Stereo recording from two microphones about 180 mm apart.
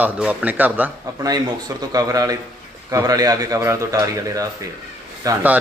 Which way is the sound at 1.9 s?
20° right (ahead or behind).